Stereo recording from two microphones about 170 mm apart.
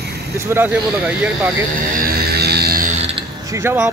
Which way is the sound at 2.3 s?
70° right (ahead or behind).